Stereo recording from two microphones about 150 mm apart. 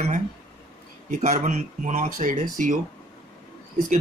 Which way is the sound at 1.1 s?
55° right (ahead or behind).